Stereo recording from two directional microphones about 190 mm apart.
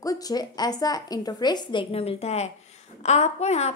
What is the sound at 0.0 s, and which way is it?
A woman's voice, 20° left (ahead or behind).